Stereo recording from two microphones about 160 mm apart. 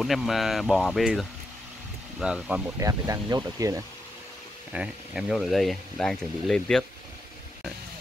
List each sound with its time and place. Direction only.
0.0 s speech: centre (ahead or behind)
2.8 s speech: 20° right (ahead or behind)
4.7 s speech: 5° right (ahead or behind)